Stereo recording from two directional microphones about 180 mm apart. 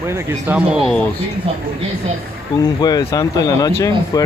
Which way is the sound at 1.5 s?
35° right (ahead or behind).